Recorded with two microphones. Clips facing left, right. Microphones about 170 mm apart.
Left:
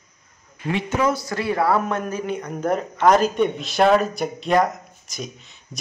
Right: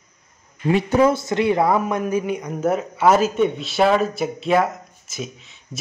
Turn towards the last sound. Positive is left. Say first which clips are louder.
# right 2 dB
turn(degrees=0)  # may be behind; listen again after turning